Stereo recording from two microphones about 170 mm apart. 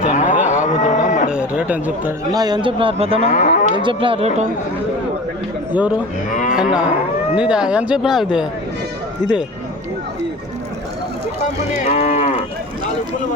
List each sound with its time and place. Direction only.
0.0 s moo: 50° left (ahead or behind)
1.3 s a sound: 5° right (ahead or behind)
2.3 s a man's voice: 25° right (ahead or behind)
3.2 s livestock: 45° left (ahead or behind)
3.8 s speech: 30° right (ahead or behind)
6.3 s cattle: 50° left (ahead or behind)
6.6 s speech: 5° right (ahead or behind)
11.7 s cattle: 45° left (ahead or behind)